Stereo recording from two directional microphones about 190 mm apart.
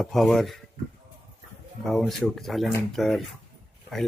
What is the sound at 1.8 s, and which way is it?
Speech, centre (ahead or behind).